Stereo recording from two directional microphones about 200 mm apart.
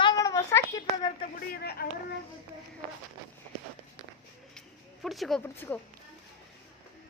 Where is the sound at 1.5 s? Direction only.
50° left (ahead or behind).